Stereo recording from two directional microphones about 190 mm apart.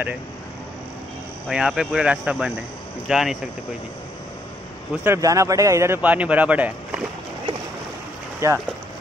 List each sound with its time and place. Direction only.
1.5 s speech: 5° right (ahead or behind)
5.0 s a man's voice: 15° right (ahead or behind)
8.4 s a man's voice: 15° right (ahead or behind)